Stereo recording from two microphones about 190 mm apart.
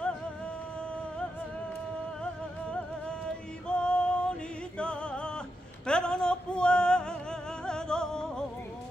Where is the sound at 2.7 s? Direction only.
5° left (ahead or behind).